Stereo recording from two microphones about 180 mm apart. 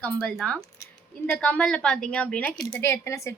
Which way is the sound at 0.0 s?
5° left (ahead or behind).